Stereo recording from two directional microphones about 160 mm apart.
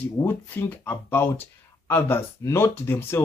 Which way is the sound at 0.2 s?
15° left (ahead or behind).